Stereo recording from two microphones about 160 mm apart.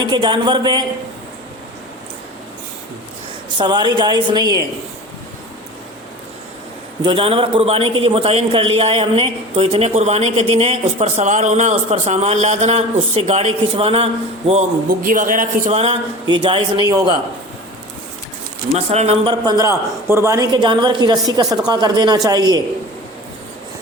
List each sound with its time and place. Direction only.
0.0 s a man's voice: 30° right (ahead or behind)
3.6 s a man's voice: 25° right (ahead or behind)
7.0 s a man's voice: 35° right (ahead or behind)
14.8 s a man's voice: 60° right (ahead or behind)
15.7 s a man's voice: 40° right (ahead or behind)
18.7 s a man's voice: 40° right (ahead or behind); by 22.6 s 25° right (ahead or behind)